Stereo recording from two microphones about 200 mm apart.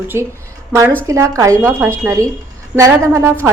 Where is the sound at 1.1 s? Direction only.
15° right (ahead or behind).